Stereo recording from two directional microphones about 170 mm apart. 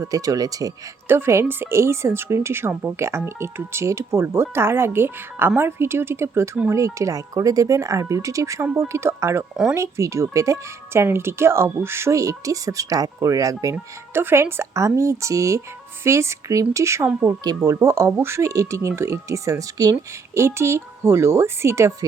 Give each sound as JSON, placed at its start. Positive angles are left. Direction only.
{"t": 0.0, "sound": "speech", "side_deg": -20}